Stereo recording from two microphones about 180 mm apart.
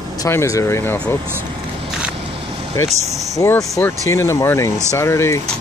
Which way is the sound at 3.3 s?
20° left (ahead or behind).